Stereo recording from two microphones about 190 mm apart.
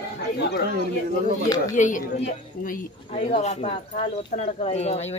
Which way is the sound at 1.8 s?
40° left (ahead or behind).